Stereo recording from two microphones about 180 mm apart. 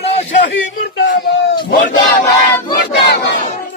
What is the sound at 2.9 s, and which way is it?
Battle cry, 70° left (ahead or behind).